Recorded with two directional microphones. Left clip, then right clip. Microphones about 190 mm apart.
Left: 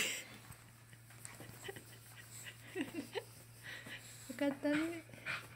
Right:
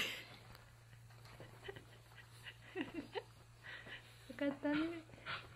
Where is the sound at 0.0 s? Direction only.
Centre (ahead or behind).